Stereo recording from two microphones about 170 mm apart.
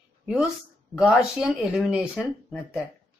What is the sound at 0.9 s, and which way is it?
Speech, 5° right (ahead or behind).